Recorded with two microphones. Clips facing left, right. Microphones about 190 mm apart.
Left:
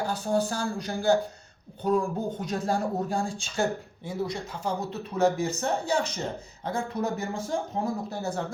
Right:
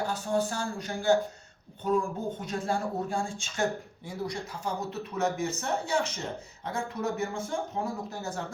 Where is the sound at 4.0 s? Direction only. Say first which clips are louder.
Left 4 dB; 25° left (ahead or behind).